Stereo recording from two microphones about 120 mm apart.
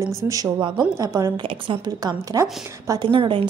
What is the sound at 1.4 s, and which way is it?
A woman's voice, 40° right (ahead or behind).